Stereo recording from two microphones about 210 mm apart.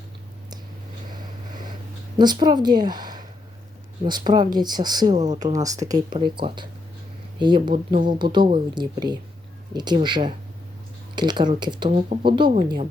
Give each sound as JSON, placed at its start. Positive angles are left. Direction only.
{"t": 2.1, "sound": "speech", "side_deg": -20}
{"t": 5.1, "sound": "speech", "side_deg": -35}
{"t": 5.4, "sound": "speech", "side_deg": -15}